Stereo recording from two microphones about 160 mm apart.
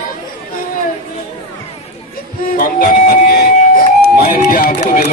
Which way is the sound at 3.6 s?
65° left (ahead or behind).